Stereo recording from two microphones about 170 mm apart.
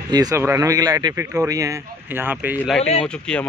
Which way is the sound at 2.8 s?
40° left (ahead or behind).